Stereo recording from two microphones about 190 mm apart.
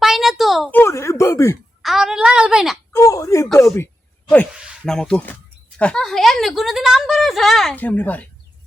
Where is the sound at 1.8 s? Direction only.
Centre (ahead or behind).